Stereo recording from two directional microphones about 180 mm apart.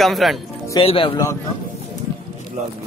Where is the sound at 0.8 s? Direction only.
30° left (ahead or behind).